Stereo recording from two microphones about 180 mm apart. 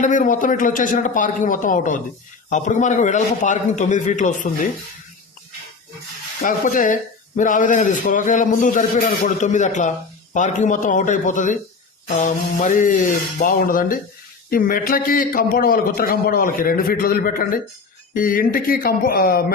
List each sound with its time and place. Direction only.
0.0 s speech: 45° left (ahead or behind)
6.4 s speech: 45° left (ahead or behind)